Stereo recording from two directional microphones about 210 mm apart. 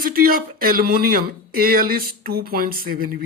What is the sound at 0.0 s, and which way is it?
Speech, 45° right (ahead or behind).